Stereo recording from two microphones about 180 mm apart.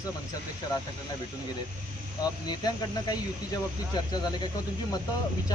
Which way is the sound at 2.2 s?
20° left (ahead or behind).